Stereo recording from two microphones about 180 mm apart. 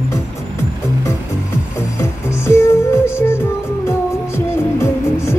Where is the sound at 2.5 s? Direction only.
15° left (ahead or behind).